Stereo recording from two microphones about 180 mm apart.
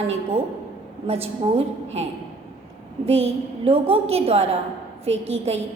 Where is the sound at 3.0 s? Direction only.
35° right (ahead or behind).